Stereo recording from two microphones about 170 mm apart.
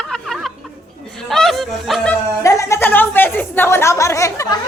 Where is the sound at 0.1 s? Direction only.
Centre (ahead or behind).